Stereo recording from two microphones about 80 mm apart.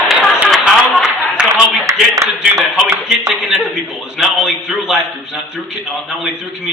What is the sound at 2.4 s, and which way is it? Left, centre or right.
A man's voice, centre.